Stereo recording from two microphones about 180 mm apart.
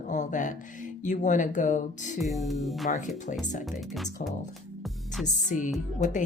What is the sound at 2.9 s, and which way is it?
Speech, 45° left (ahead or behind).